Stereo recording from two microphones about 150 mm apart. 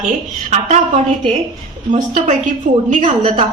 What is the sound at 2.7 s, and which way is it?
Speech, 75° right (ahead or behind).